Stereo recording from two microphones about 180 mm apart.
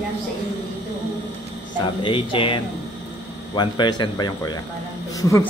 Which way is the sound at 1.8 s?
30° left (ahead or behind).